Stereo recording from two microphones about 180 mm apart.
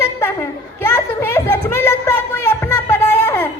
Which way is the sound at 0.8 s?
10° left (ahead or behind).